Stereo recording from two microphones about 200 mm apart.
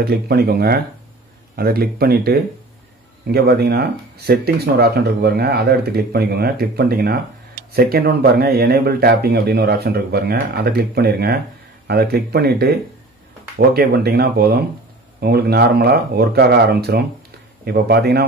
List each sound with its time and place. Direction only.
0.0 s a man's voice: 50° right (ahead or behind)